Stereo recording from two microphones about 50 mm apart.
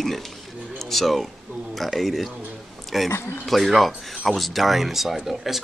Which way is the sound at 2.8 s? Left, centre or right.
Centre.